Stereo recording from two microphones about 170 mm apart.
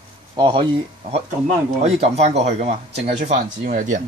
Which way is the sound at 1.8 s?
40° right (ahead or behind).